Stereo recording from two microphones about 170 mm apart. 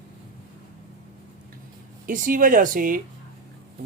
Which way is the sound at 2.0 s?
55° right (ahead or behind).